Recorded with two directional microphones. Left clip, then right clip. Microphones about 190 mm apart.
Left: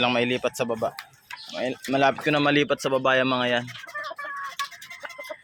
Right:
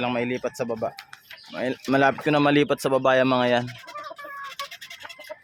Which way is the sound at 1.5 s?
25° right (ahead or behind).